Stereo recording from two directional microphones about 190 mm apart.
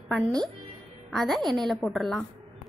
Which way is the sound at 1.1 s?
Centre (ahead or behind).